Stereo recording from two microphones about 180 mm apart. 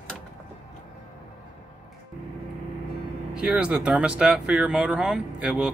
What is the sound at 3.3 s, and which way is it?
Speech, 5° right (ahead or behind).